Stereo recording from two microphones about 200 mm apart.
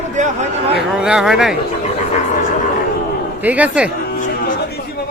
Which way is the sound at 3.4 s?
5° right (ahead or behind).